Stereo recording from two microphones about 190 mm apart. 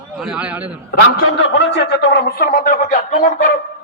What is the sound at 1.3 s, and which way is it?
A man's voice, 65° left (ahead or behind).